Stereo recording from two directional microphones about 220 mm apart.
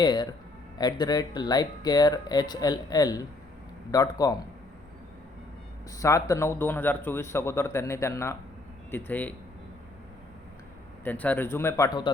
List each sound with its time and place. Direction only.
0.0 s speech: 20° left (ahead or behind)
6.0 s speech: 15° left (ahead or behind)
11.0 s speech: 5° left (ahead or behind)